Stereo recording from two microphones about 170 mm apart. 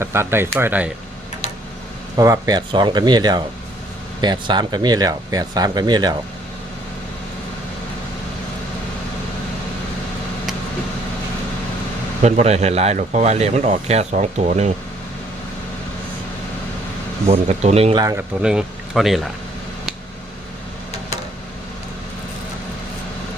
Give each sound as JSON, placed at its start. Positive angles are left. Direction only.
{"t": 0.0, "sound": "speech", "side_deg": -15}
{"t": 2.1, "sound": "speech", "side_deg": -20}
{"t": 12.2, "sound": "a man's voice", "side_deg": -40}
{"t": 17.2, "sound": "a man's voice", "side_deg": -40}
{"t": 17.9, "sound": "speech", "side_deg": -20}
{"t": 18.4, "sound": "speech", "side_deg": -5}